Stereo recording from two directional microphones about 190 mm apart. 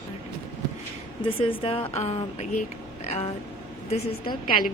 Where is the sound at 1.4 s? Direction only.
30° left (ahead or behind).